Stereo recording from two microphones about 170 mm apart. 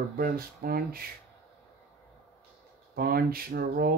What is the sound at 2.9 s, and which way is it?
Speech, 60° right (ahead or behind).